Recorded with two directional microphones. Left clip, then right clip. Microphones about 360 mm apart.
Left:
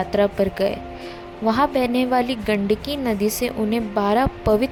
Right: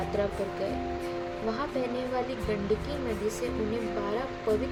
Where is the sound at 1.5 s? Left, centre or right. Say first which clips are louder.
Left 14 dB; left.